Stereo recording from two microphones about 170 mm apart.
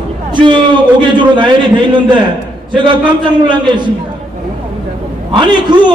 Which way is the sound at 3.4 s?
25° right (ahead or behind).